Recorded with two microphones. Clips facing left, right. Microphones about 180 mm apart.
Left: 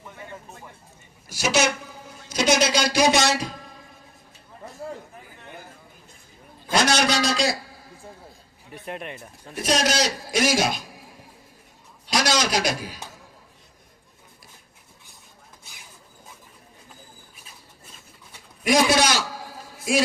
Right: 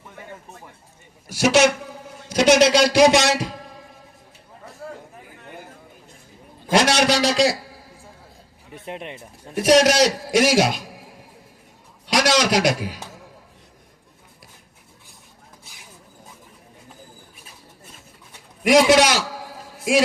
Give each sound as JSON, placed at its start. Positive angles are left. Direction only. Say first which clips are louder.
{"t": 1.3, "sound": "a man's voice", "louder": "right 6 dB", "side_deg": -70}
{"t": 6.7, "sound": "a man's voice", "louder": "right 4 dB", "side_deg": -90}
{"t": 8.7, "sound": "speech", "louder": "right 1 dB", "side_deg": -20}
{"t": 9.6, "sound": "a man's voice", "louder": "right 8 dB", "side_deg": -75}
{"t": 12.0, "sound": "a man's voice", "louder": "right 4 dB", "side_deg": -85}
{"t": 18.6, "sound": "a man's voice", "louder": "right 5 dB", "side_deg": -90}